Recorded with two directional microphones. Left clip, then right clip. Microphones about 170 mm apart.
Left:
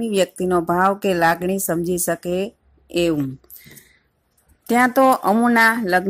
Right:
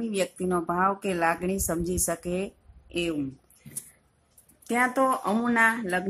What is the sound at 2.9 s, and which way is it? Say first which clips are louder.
Speech: left 10 dB; 50° left (ahead or behind).